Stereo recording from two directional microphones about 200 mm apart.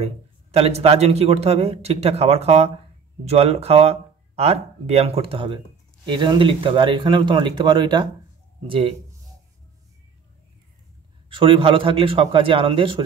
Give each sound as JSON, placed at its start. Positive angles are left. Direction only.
{"t": 0.0, "sound": "speech", "side_deg": -30}
{"t": 11.3, "sound": "speech", "side_deg": -25}